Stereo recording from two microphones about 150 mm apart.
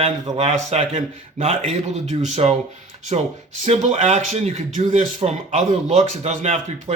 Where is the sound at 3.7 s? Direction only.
45° right (ahead or behind).